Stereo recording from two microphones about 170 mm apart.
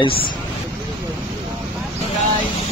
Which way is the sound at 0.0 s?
30° left (ahead or behind).